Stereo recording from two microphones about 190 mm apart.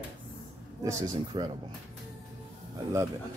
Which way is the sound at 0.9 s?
20° right (ahead or behind).